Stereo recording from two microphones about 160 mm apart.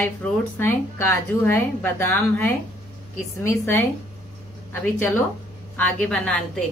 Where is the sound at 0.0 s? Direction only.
15° left (ahead or behind).